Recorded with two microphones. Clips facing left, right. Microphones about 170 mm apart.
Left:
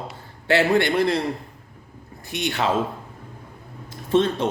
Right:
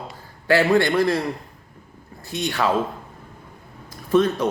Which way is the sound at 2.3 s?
20° left (ahead or behind).